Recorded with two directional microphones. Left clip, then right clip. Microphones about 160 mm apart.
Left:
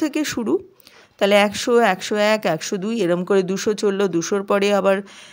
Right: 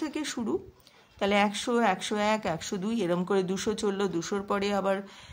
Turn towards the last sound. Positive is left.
turn(degrees=35)  # may be behind; listen again after turning